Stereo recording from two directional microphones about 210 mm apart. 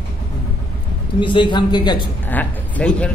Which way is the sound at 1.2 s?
20° left (ahead or behind).